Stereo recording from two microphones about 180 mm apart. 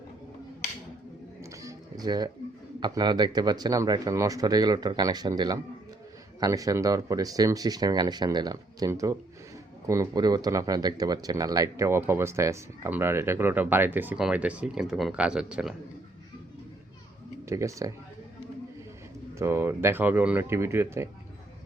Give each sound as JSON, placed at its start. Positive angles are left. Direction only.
{"t": 1.4, "sound": "music", "side_deg": -20}
{"t": 2.8, "sound": "speech", "side_deg": -25}
{"t": 17.4, "sound": "speech", "side_deg": -15}
{"t": 19.4, "sound": "speech", "side_deg": -15}